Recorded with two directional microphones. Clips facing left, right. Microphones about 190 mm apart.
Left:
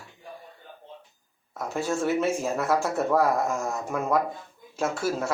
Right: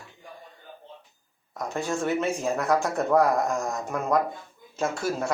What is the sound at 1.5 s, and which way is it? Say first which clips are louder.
Speech: left 1 dB; 5° left (ahead or behind).